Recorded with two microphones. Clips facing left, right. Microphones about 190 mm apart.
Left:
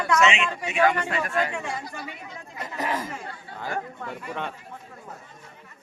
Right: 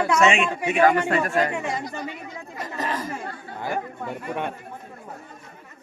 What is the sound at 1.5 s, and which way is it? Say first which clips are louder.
Speech: right 4 dB; 20° right (ahead or behind).